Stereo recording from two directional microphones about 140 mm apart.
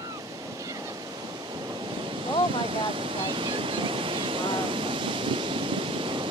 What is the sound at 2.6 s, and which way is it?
Waterfall, 40° right (ahead or behind).